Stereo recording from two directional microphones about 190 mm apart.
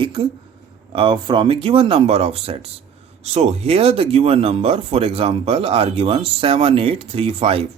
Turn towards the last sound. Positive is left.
turn(degrees=-30)  # may be behind; listen again after turning